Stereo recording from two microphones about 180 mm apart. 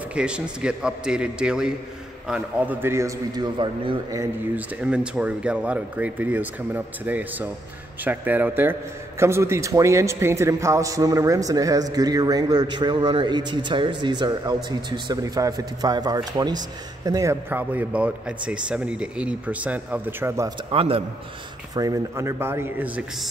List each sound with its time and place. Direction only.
0.1 s a man's voice: 5° right (ahead or behind); by 4.2 s 25° right (ahead or behind)
4.2 s a man's voice: 10° right (ahead or behind)
20.7 s a man's voice: 30° right (ahead or behind)
21.7 s speech: 20° right (ahead or behind)